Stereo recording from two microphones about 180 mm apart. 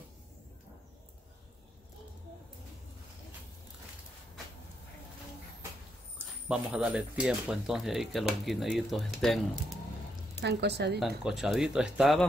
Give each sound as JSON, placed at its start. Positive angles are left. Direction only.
{"t": 6.1, "sound": "speech", "side_deg": -5}
{"t": 10.4, "sound": "a woman's voice", "side_deg": -70}
{"t": 11.0, "sound": "speech", "side_deg": 0}